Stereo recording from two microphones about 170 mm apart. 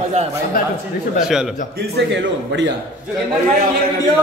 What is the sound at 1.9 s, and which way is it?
Speech, 85° right.